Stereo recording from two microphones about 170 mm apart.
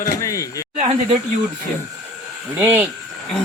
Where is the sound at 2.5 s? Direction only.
10° right (ahead or behind).